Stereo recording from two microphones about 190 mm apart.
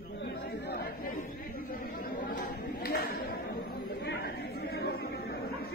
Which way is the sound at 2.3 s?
55° left (ahead or behind).